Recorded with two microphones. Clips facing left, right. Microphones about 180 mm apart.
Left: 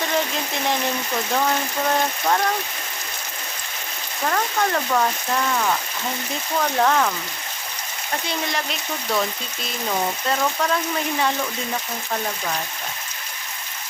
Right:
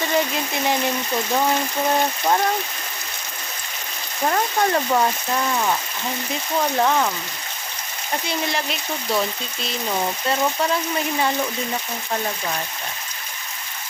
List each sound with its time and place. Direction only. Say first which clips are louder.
4.3 s speech: right 2 dB; 20° right (ahead or behind)
6.7 s speech: left 1 dB; 5° right (ahead or behind)